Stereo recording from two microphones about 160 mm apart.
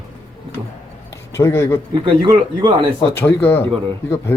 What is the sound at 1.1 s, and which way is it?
Speech, 20° left (ahead or behind).